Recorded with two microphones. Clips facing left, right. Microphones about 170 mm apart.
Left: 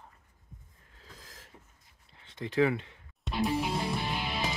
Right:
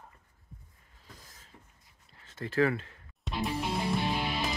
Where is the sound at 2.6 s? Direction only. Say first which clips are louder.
Left 1 dB; 5° left (ahead or behind).